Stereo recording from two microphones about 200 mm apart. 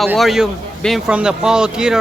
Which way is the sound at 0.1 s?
Centre (ahead or behind).